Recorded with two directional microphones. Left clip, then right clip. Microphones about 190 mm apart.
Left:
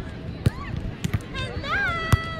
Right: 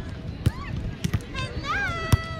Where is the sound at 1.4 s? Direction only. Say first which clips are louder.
Left 2 dB; 55° left (ahead or behind).